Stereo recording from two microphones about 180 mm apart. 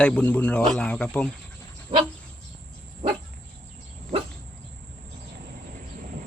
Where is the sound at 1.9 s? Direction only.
30° right (ahead or behind).